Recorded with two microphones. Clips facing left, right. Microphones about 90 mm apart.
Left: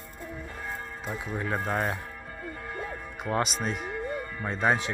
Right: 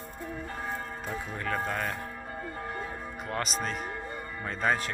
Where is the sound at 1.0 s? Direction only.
20° left (ahead or behind).